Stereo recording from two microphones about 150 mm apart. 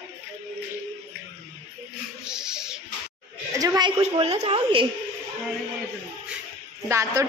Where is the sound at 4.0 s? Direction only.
45° right (ahead or behind).